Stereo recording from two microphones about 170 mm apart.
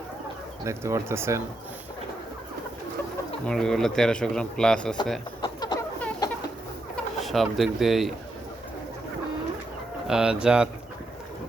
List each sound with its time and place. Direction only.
0.6 s speech: 15° right (ahead or behind)
3.4 s speech: 5° left (ahead or behind)
5.4 s a sound: 25° left (ahead or behind)
6.9 s speech: centre (ahead or behind)
10.1 s speech: 5° right (ahead or behind)